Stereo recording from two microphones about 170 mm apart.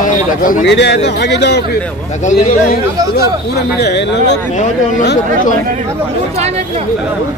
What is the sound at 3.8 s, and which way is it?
Speech, 90° left.